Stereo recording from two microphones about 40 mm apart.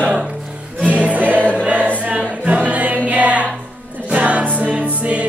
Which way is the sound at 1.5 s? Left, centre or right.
Right.